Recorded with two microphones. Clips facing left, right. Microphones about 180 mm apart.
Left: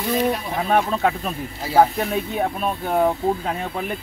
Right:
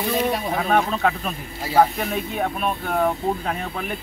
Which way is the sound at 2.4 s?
25° left (ahead or behind).